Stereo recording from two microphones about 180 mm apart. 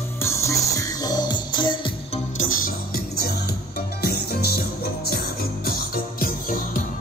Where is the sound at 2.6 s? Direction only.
55° left (ahead or behind).